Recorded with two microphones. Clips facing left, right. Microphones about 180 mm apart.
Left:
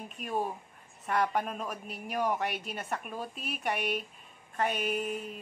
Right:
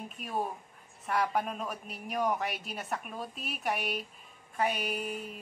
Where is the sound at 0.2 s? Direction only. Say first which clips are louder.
Left 2 dB; centre (ahead or behind).